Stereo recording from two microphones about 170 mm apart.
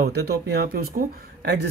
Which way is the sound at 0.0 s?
70° right (ahead or behind).